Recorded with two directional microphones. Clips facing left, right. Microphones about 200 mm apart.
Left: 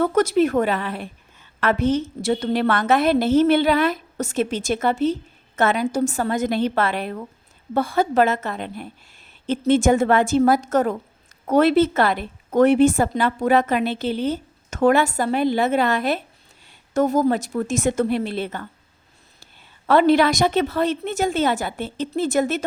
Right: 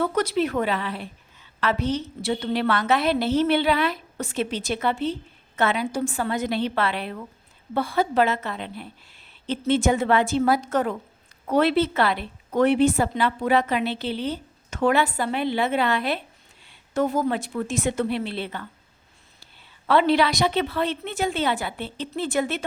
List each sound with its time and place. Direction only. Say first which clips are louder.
0.0 s a woman's voice: left 5 dB; 45° left (ahead or behind)
19.9 s a woman's voice: left 4 dB; 45° left (ahead or behind)